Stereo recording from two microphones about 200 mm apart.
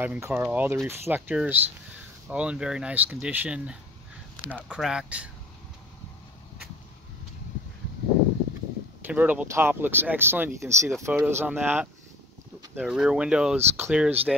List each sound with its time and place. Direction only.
0.0 s speech: 10° right (ahead or behind)
9.0 s speech: 10° right (ahead or behind)